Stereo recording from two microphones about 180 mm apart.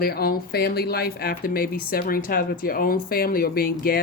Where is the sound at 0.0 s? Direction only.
55° left (ahead or behind).